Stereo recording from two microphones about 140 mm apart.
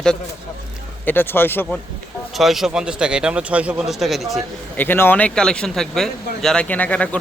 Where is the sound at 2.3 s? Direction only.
Centre (ahead or behind).